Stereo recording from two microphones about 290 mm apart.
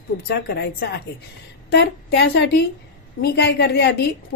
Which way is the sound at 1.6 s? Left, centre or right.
Left.